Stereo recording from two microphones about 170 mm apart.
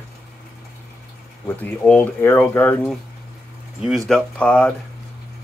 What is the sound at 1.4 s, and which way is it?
Speech, 10° left (ahead or behind).